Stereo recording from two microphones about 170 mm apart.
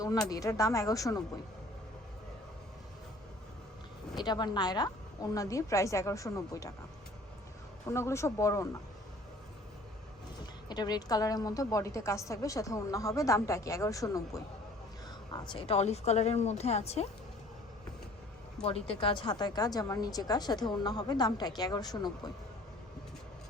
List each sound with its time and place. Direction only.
0.3 s a woman's voice: 20° left (ahead or behind)
4.1 s a woman's voice: 25° left (ahead or behind)
7.9 s speech: 15° left (ahead or behind)
10.4 s a woman's voice: 25° left (ahead or behind)
18.6 s a woman's voice: 35° left (ahead or behind)